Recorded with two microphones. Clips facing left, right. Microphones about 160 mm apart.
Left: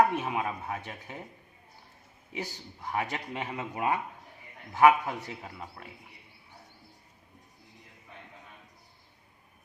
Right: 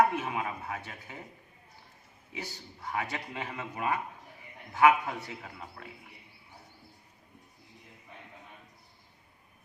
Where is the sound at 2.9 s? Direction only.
20° left (ahead or behind).